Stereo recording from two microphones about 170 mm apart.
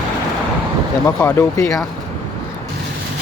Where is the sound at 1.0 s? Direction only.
20° left (ahead or behind).